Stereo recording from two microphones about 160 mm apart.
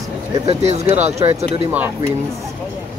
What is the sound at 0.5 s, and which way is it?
Speech, 40° right (ahead or behind).